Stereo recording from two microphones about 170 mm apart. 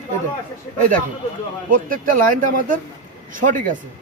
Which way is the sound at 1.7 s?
55° right (ahead or behind).